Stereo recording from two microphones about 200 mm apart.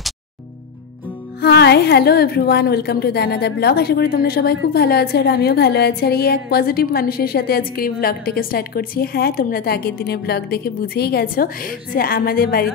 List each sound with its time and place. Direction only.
1.4 s a woman's voice: 55° left (ahead or behind)